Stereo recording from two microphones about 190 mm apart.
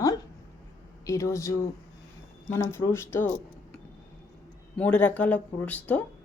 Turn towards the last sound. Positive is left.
turn(degrees=10)  # may be behind; listen again after turning